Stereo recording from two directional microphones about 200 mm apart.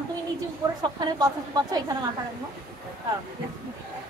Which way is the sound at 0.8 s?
20° right (ahead or behind).